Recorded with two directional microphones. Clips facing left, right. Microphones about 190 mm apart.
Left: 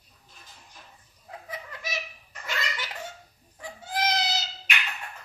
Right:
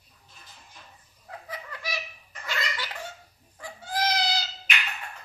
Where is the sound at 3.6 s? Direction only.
20° left (ahead or behind).